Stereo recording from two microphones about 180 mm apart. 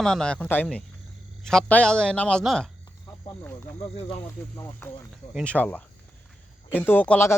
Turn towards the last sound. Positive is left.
turn(degrees=10)  # may be behind; listen again after turning